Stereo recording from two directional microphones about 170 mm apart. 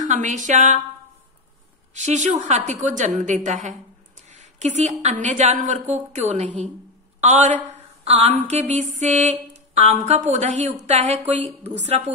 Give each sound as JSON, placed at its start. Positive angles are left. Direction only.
{"t": 0.0, "sound": "a woman's voice", "side_deg": -45}
{"t": 2.0, "sound": "a woman's voice", "side_deg": -45}
{"t": 4.3, "sound": "a sound", "side_deg": -40}
{"t": 5.2, "sound": "a woman's voice", "side_deg": -45}